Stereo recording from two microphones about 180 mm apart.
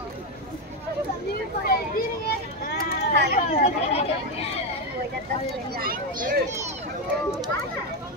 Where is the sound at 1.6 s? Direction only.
60° left (ahead or behind).